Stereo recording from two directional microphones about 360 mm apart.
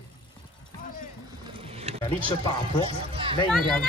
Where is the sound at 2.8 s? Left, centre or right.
Centre.